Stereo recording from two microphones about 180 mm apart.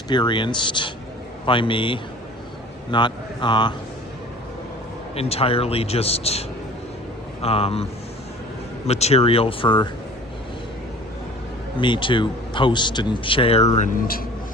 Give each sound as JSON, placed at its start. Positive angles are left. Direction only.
{"t": 0.1, "sound": "speech", "side_deg": 25}
{"t": 5.1, "sound": "a man's voice", "side_deg": 35}
{"t": 7.4, "sound": "a man's voice", "side_deg": 35}
{"t": 8.9, "sound": "a man's voice", "side_deg": 35}
{"t": 11.8, "sound": "speech", "side_deg": 25}
{"t": 13.7, "sound": "speech", "side_deg": 50}